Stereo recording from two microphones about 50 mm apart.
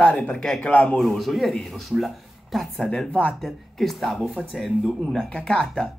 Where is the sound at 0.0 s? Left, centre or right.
Left.